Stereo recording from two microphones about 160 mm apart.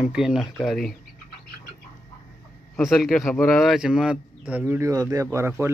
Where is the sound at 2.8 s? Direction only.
Centre (ahead or behind).